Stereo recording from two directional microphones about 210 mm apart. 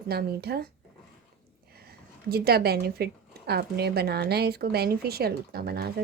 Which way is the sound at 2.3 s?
50° right (ahead or behind).